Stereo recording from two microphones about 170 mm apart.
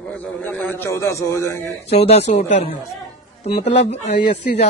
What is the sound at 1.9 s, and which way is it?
Speech, 40° left (ahead or behind).